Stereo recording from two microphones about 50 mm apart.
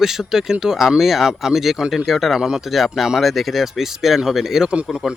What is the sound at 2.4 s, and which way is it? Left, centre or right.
Speech, centre.